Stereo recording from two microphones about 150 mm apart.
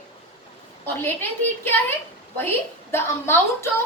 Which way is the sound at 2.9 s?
15° left (ahead or behind).